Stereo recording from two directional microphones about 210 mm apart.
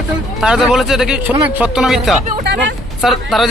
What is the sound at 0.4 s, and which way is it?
Speech, 5° right (ahead or behind).